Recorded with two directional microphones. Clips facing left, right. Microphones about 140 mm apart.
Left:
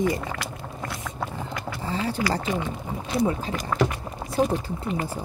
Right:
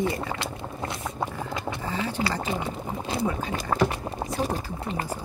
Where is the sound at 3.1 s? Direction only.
30° right (ahead or behind).